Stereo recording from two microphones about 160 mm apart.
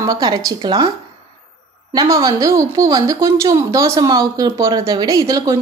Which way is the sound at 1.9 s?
20° right (ahead or behind).